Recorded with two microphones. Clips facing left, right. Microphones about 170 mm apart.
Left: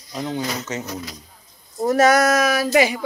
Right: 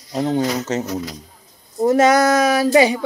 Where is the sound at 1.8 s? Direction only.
25° right (ahead or behind).